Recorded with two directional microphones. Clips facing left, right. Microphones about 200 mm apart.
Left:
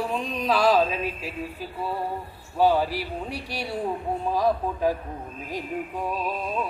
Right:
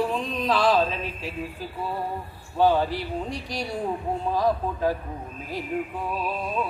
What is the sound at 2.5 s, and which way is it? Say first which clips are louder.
Speech: even; 10° left (ahead or behind).